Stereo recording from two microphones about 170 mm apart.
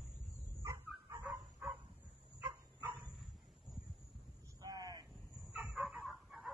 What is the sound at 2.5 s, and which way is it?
Dog, 15° right (ahead or behind).